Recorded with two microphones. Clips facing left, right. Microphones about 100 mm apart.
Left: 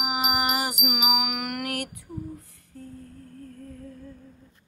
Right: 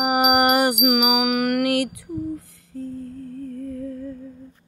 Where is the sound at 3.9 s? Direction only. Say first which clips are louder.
Right 11 dB; 90° right.